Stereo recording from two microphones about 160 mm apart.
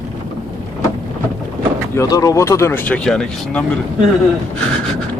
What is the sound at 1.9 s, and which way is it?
Speech, 20° left (ahead or behind).